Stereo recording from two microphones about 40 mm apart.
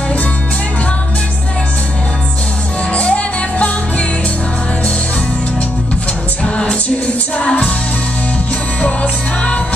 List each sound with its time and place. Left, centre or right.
3.0 s music: left
6.4 s music: left
8.8 s music: left